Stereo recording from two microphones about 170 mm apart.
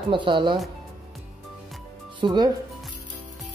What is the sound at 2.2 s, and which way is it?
Speech, 25° right (ahead or behind).